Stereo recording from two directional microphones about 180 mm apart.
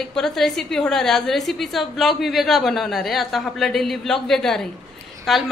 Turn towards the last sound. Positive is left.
turn(degrees=0)  # may be behind; listen again after turning